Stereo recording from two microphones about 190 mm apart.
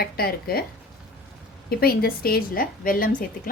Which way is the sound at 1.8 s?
50° left (ahead or behind).